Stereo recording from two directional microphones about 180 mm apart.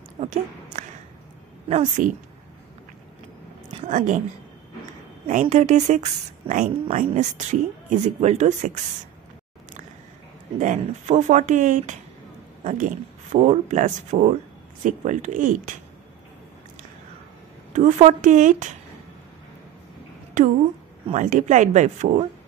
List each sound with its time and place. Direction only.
0.2 s speech: 40° right (ahead or behind)
3.7 s a woman's voice: 45° right (ahead or behind)
5.3 s speech: 40° right (ahead or behind)
10.6 s speech: 40° right (ahead or behind)
17.7 s speech: 45° right (ahead or behind)
20.4 s speech: 45° right (ahead or behind)